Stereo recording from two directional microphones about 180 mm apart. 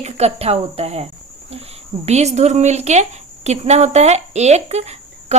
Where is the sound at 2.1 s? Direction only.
35° right (ahead or behind).